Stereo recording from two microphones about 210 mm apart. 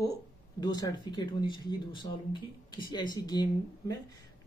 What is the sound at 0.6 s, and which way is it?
Speech, 20° left (ahead or behind).